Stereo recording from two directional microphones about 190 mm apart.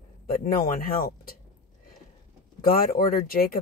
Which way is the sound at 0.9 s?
50° left (ahead or behind).